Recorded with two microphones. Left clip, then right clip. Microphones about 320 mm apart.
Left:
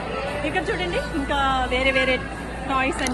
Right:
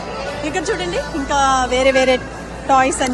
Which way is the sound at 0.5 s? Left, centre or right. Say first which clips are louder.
Right 5 dB; centre.